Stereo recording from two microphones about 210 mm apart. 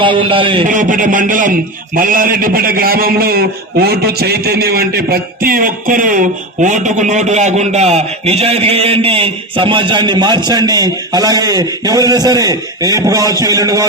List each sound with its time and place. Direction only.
0.0 s a man's voice: 25° right (ahead or behind)
0.7 s a man's voice: 40° right (ahead or behind); by 13.8 s 15° right (ahead or behind)